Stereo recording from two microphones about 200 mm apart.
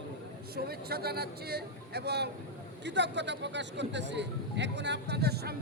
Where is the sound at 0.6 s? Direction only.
50° right (ahead or behind).